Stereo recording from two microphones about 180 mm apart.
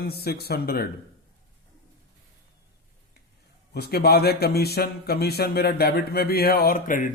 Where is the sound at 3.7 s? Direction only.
60° left (ahead or behind).